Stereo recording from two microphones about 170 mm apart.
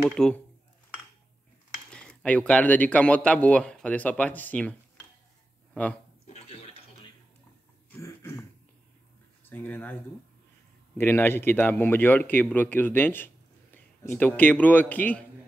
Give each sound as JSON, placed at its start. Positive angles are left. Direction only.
{"t": 0.1, "sound": "speech", "side_deg": 5}
{"t": 1.9, "sound": "a man's voice", "side_deg": 5}
{"t": 6.2, "sound": "toilet flush", "side_deg": 40}
{"t": 7.9, "sound": "throat clearing", "side_deg": 15}
{"t": 9.4, "sound": "speech", "side_deg": 10}
{"t": 11.0, "sound": "a man's voice", "side_deg": 15}